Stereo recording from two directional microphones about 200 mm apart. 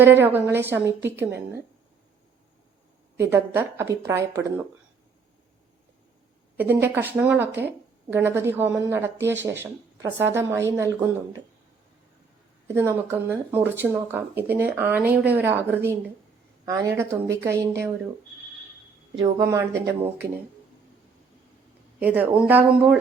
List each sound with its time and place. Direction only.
0.0 s speech: 10° right (ahead or behind)
3.2 s speech: 10° right (ahead or behind)
6.6 s speech: 10° right (ahead or behind)
12.6 s speech: 10° right (ahead or behind)
19.1 s a woman's voice: 20° right (ahead or behind)
22.0 s speech: 10° right (ahead or behind)